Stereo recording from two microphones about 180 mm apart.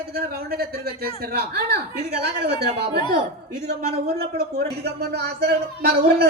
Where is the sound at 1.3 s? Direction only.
60° right (ahead or behind).